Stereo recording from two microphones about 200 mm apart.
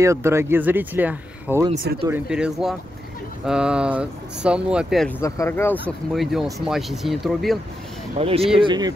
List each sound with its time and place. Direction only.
0.0 s speech: 15° right (ahead or behind)
5.2 s speech: 15° left (ahead or behind)
6.1 s speech: centre (ahead or behind)
8.2 s speech: 30° right (ahead or behind)